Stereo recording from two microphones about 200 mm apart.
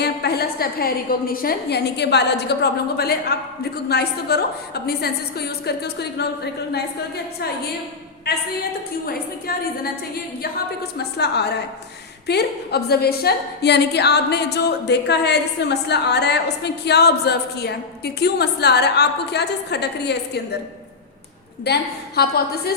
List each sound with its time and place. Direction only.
0.0 s a woman's voice: 55° left (ahead or behind)
9.0 s a woman's voice: 50° left (ahead or behind)
10.9 s a woman's voice: 55° left (ahead or behind)
21.6 s a woman's voice: 55° left (ahead or behind)